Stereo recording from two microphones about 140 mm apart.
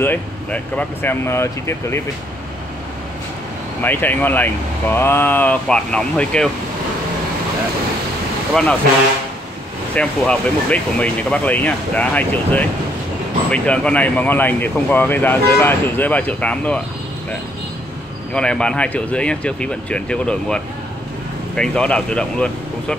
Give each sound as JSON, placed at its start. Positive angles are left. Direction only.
{"t": 0.0, "sound": "speech", "side_deg": 10}
{"t": 3.8, "sound": "speech", "side_deg": 15}
{"t": 9.9, "sound": "speech", "side_deg": 10}
{"t": 18.3, "sound": "speech", "side_deg": 5}